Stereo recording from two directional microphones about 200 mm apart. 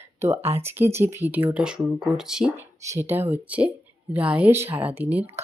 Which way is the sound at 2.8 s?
15° right (ahead or behind).